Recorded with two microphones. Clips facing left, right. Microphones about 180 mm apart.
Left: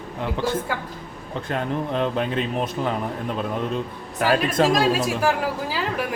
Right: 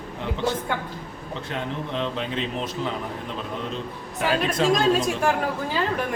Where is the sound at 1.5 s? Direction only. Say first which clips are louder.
Left 5 dB; 50° left (ahead or behind).